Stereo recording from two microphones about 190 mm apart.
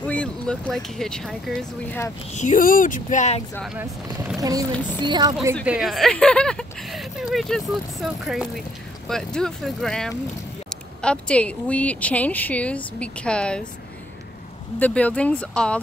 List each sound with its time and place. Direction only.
0.0 s speech: 5° left (ahead or behind)
2.3 s speech: 40° left (ahead or behind)
4.4 s speech: 20° right (ahead or behind)
5.7 s a woman's voice: centre (ahead or behind)
14.8 s a woman's voice: 5° left (ahead or behind)